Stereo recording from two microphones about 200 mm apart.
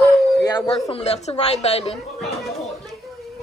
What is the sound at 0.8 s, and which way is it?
A woman's voice, 30° left (ahead or behind).